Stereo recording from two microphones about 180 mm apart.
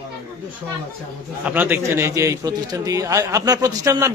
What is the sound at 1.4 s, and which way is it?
A man's voice, 10° right (ahead or behind).